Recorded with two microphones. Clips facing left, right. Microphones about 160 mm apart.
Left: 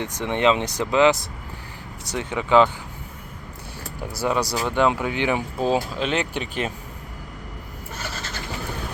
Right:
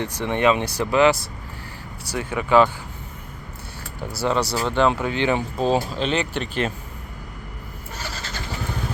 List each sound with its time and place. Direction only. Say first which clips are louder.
0.0 s speech: right 1 dB; 15° left (ahead or behind)
4.0 s speech: right 1 dB; 10° left (ahead or behind)